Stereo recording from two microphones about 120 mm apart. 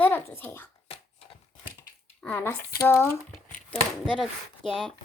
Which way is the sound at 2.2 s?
20° left (ahead or behind).